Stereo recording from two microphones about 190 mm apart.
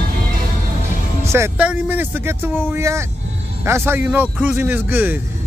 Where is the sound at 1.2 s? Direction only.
15° right (ahead or behind).